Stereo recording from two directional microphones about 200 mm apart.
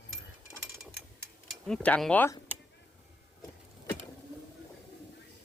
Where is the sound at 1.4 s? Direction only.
5° left (ahead or behind).